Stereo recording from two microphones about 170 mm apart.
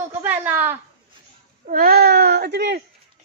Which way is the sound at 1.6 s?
55° right (ahead or behind).